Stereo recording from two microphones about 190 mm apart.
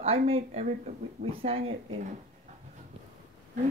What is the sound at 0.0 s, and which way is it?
Speech, 30° right (ahead or behind).